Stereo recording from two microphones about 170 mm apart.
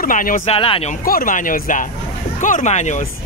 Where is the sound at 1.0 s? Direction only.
55° left (ahead or behind).